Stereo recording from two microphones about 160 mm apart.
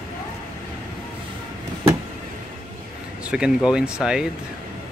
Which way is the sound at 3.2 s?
5° right (ahead or behind).